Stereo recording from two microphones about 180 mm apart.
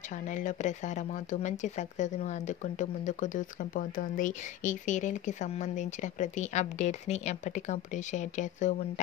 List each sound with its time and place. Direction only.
0.3 s speech: 45° left (ahead or behind)